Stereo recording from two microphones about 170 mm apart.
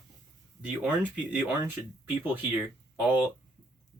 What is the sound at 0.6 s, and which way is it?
Speech, 5° right (ahead or behind).